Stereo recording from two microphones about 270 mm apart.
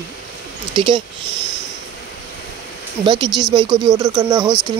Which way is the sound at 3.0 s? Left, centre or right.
Centre.